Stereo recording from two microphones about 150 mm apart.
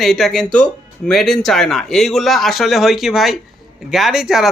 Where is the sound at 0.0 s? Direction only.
5° left (ahead or behind).